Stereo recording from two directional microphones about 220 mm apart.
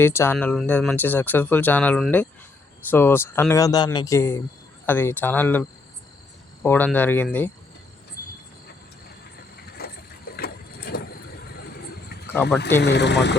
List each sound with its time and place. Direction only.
0.0 s speech: 10° left (ahead or behind)
9.8 s vehicle: 45° left (ahead or behind)
12.3 s speech: 10° left (ahead or behind)
12.8 s speech: 50° left (ahead or behind)